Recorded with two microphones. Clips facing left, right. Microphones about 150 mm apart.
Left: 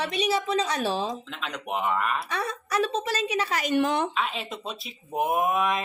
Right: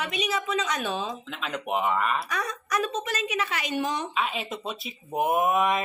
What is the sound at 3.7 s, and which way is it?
Speech, 60° left (ahead or behind).